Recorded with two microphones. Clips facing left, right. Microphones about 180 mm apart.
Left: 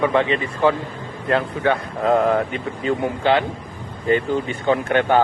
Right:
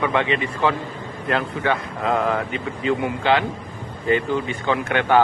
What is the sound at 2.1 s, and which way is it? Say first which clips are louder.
Speech: left 4 dB; 40° left (ahead or behind).